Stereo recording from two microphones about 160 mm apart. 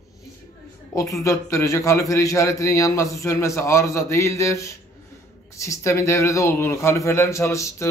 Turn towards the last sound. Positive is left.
turn(degrees=20)  # may be behind; listen again after turning